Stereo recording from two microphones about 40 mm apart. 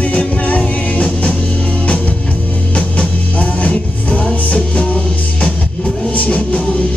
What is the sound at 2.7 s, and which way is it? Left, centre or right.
Music, left.